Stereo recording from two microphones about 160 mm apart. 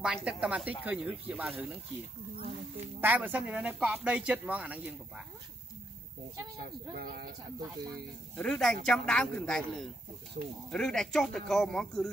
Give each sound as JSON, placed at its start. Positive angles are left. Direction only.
{"t": 0.0, "sound": "speech", "side_deg": -5}
{"t": 3.0, "sound": "speech", "side_deg": -10}
{"t": 6.9, "sound": "speech", "side_deg": -70}
{"t": 8.4, "sound": "speech", "side_deg": 5}